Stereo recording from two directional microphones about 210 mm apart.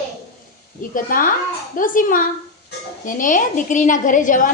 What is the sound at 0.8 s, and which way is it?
A woman's voice, 40° left (ahead or behind).